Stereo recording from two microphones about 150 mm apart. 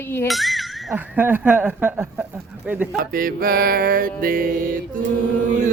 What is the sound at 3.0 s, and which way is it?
Music, 70° right (ahead or behind).